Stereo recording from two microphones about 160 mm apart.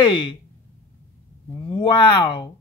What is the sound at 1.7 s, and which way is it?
Speech, 30° left (ahead or behind).